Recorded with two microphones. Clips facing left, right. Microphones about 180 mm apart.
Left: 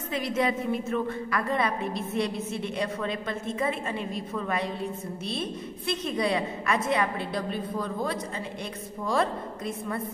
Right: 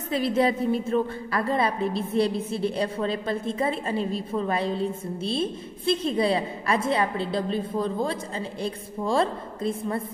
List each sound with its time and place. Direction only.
0.1 s a woman's voice: 30° right (ahead or behind)